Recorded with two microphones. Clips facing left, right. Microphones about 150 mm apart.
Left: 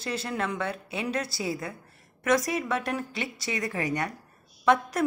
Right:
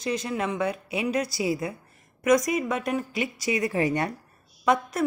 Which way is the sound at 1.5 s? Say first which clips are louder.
Right 5 dB; 20° right (ahead or behind).